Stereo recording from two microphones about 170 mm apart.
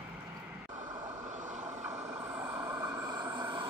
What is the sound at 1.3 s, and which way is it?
Vehicle, 45° right (ahead or behind).